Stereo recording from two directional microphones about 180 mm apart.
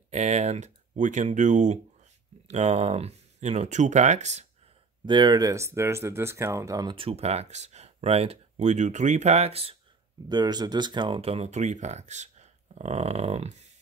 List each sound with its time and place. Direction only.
0.1 s speech: 40° right (ahead or behind)
5.0 s speech: 25° right (ahead or behind)
10.2 s speech: 25° right (ahead or behind)